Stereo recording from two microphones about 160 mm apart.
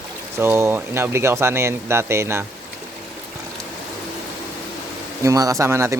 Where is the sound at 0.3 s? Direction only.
15° right (ahead or behind).